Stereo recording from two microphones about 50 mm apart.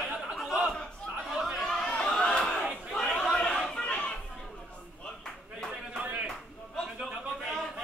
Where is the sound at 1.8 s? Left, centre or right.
Centre.